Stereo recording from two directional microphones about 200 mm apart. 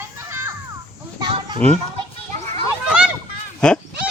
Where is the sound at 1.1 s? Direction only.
20° right (ahead or behind).